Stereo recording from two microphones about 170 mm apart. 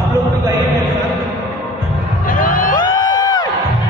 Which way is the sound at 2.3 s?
55° left (ahead or behind).